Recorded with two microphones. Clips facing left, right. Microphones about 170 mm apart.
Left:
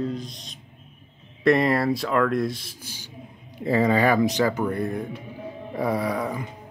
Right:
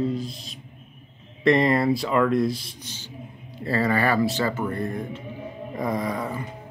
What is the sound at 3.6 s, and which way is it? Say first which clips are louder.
Speech: left 3 dB; 15° left (ahead or behind).